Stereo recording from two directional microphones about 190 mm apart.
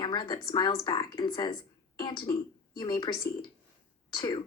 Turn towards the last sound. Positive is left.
turn(degrees=25)  # may be behind; listen again after turning